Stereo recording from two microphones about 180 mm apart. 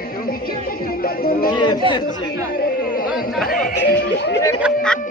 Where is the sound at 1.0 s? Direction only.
55° left (ahead or behind).